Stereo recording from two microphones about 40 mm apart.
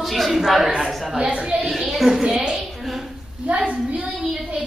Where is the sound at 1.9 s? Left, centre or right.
Centre.